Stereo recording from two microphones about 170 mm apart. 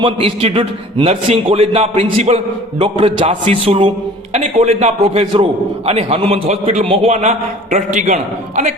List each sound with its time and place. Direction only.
0.0 s a man's voice: 35° right (ahead or behind)